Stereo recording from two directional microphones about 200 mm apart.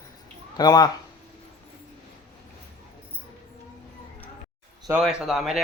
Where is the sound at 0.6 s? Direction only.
20° left (ahead or behind).